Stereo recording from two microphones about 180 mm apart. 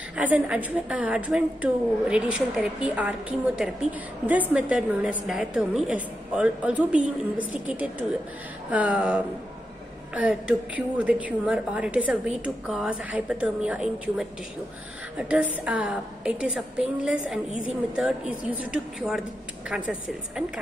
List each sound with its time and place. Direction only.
0.1 s a woman's voice: 5° right (ahead or behind)
17.5 s a woman's voice: 90° left
17.9 s a woman's voice: 5° right (ahead or behind)